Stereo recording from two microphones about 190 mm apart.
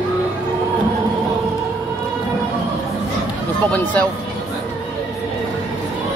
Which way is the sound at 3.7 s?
5° left (ahead or behind).